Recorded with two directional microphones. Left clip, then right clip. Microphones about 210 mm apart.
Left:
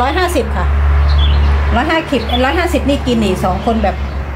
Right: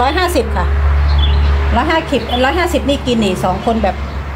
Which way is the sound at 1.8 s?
15° right (ahead or behind).